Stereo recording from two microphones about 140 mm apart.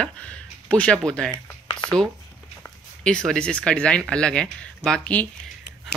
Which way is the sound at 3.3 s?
5° left (ahead or behind).